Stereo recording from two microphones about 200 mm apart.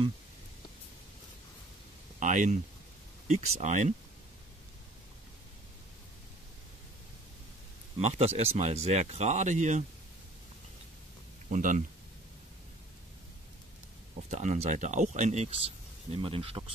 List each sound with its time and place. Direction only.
2.1 s speech: 40° right (ahead or behind)
8.0 s speech: 35° right (ahead or behind)
11.5 s speech: 40° right (ahead or behind)
14.3 s speech: 35° right (ahead or behind)